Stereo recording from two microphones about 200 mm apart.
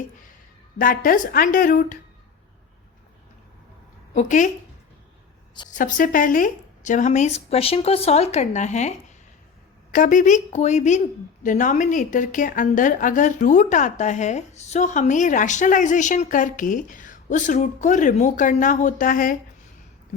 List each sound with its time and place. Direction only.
0.8 s speech: 45° left (ahead or behind)
4.1 s a woman's voice: 40° left (ahead or behind)
5.6 s a woman's voice: 40° left (ahead or behind)
9.9 s a woman's voice: 40° left (ahead or behind)